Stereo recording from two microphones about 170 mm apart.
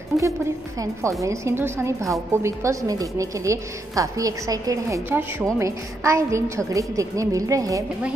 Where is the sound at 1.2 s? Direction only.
15° right (ahead or behind).